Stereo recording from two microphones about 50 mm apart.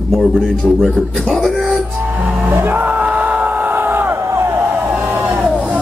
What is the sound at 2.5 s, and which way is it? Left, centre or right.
Music, right.